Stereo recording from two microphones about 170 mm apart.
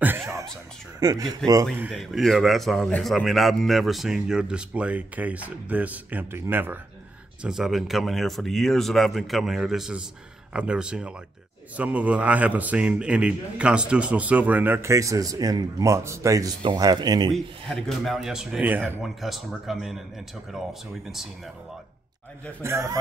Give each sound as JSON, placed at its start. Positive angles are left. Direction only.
{"t": 0.0, "sound": "a sound", "side_deg": -15}
{"t": 0.9, "sound": "speech", "side_deg": -20}
{"t": 1.8, "sound": "a man's voice", "side_deg": 0}
{"t": 17.3, "sound": "a man's voice", "side_deg": 0}
{"t": 22.6, "sound": "a man's voice", "side_deg": -15}